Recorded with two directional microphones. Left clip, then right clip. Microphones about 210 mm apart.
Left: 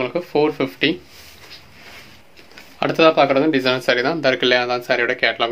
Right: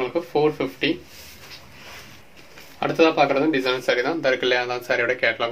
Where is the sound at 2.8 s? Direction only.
50° left (ahead or behind).